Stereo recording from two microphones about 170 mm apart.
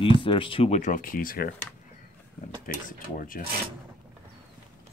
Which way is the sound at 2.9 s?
55° left (ahead or behind).